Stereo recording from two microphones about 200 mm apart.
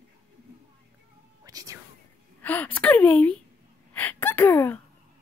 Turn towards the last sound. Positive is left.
turn(degrees=10)  # may be behind; listen again after turning